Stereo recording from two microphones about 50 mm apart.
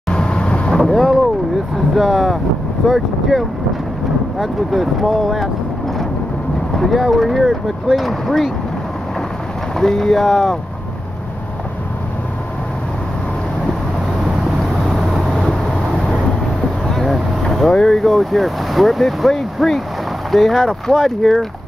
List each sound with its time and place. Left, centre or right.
0.1 s vehicle: centre
0.7 s boat: centre
2.0 s speech: centre
7.0 s speech: centre
9.8 s speech: centre
14.9 s vehicle: centre
17.5 s speech: centre